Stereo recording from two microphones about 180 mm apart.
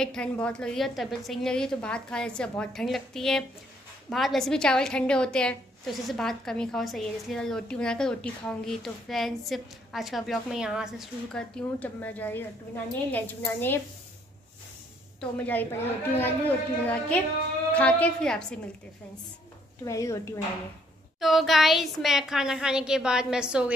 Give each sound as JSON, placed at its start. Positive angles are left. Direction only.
{"t": 0.0, "sound": "a woman's voice", "side_deg": 5}
{"t": 15.1, "sound": "a woman's voice", "side_deg": 10}
{"t": 19.8, "sound": "a woman's voice", "side_deg": 15}
{"t": 21.2, "sound": "a woman's voice", "side_deg": 0}